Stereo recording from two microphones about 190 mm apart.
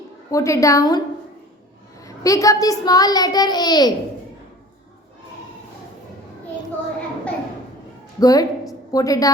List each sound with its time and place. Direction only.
0.3 s a woman's voice: 15° left (ahead or behind)
2.0 s a child's voice: 15° left (ahead or behind)
8.2 s a child's voice: 20° left (ahead or behind)